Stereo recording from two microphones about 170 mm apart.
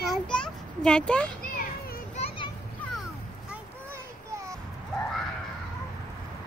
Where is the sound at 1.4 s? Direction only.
55° left (ahead or behind).